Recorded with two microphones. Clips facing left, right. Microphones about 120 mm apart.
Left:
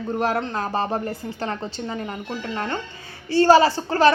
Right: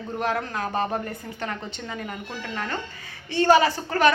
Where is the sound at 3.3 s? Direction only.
35° left (ahead or behind).